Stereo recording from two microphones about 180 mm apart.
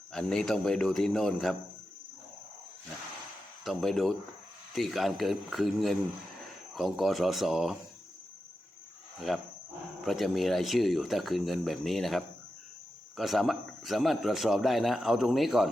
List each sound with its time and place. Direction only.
0.1 s a man's voice: centre (ahead or behind)
3.6 s a man's voice: centre (ahead or behind)
9.3 s a man's voice: centre (ahead or behind)